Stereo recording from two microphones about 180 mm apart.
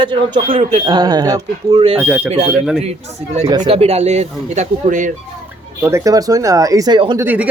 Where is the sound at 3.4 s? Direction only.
25° right (ahead or behind); by 5.1 s 40° right (ahead or behind).